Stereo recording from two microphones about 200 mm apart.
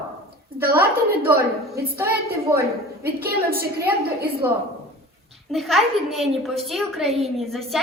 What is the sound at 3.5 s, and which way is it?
Speech, 50° right (ahead or behind).